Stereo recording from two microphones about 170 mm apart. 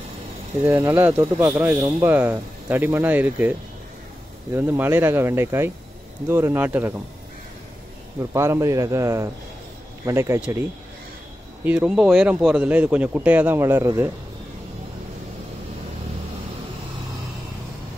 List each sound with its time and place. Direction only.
0.7 s speech: 15° right (ahead or behind)
4.6 s speech: 15° right (ahead or behind)
8.3 s speech: 15° right (ahead or behind)
11.6 s speech: 5° right (ahead or behind)